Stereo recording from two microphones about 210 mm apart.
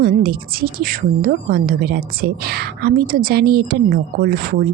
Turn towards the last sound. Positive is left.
turn(degrees=-45)  # may be behind; listen again after turning